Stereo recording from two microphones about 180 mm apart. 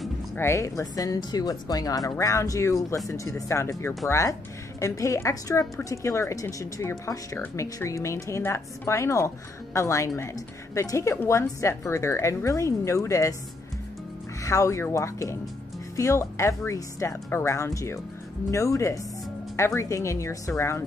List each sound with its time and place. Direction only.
0.4 s a woman's voice: 15° left (ahead or behind)
14.4 s a woman's voice: 15° left (ahead or behind)